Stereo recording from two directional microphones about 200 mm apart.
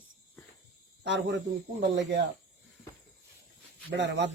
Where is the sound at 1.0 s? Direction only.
65° right (ahead or behind).